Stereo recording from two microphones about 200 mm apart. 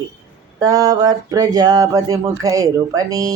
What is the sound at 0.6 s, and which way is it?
Speech, 20° right (ahead or behind).